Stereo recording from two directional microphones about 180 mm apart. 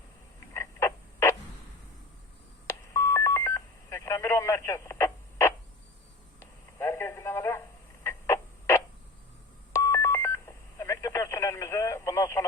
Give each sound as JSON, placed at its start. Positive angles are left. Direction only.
{"t": 0.3, "sound": "frog", "side_deg": 15}
{"t": 2.9, "sound": "telephone dialing", "side_deg": 15}
{"t": 6.4, "sound": "telephone", "side_deg": 15}
{"t": 8.0, "sound": "a sound", "side_deg": 15}
{"t": 9.7, "sound": "telephone dialing", "side_deg": 15}